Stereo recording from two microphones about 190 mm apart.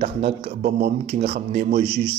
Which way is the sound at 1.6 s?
60° right (ahead or behind).